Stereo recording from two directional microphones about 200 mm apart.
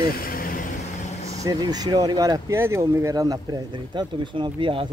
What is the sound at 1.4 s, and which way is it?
Speech, 20° right (ahead or behind).